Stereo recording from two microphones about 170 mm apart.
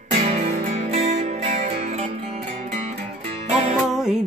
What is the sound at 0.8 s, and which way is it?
Music, 40° right (ahead or behind).